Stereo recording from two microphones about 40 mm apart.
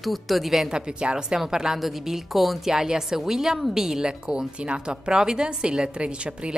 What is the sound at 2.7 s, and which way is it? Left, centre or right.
Speech, centre.